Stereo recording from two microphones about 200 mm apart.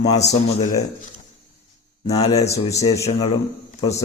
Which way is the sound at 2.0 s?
30° left (ahead or behind).